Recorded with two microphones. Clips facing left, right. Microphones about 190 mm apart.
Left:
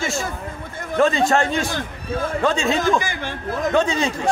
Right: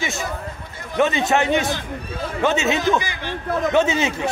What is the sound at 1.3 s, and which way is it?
Speech, 20° right (ahead or behind).